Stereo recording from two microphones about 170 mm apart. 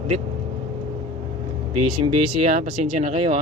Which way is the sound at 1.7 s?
35° right (ahead or behind).